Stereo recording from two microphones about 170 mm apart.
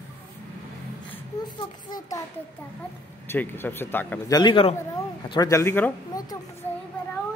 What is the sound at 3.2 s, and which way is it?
Speech, 10° left (ahead or behind).